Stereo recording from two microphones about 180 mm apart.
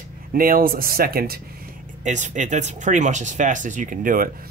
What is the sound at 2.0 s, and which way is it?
Speech, 40° right (ahead or behind).